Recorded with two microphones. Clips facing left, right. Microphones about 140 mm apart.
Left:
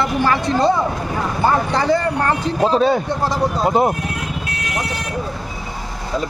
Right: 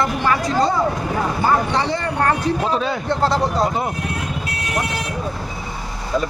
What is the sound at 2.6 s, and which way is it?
Speech, 35° left (ahead or behind).